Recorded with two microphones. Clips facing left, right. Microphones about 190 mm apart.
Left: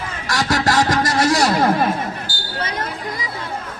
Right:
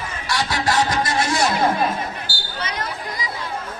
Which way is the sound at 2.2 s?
50° left (ahead or behind).